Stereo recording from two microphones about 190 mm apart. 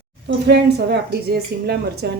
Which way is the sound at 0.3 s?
60° right (ahead or behind).